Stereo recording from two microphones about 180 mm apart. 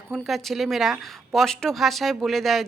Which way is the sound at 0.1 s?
Centre (ahead or behind).